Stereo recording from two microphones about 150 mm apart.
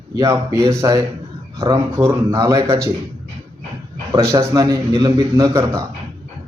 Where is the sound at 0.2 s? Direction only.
20° right (ahead or behind).